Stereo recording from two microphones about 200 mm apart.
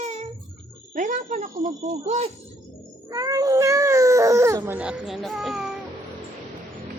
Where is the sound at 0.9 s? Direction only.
40° right (ahead or behind).